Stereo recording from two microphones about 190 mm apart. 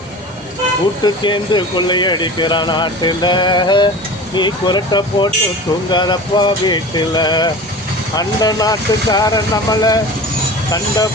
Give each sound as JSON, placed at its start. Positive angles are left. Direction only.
{"t": 1.0, "sound": "speech", "side_deg": 25}